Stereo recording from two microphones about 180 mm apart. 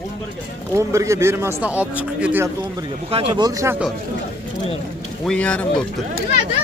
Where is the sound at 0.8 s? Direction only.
15° right (ahead or behind).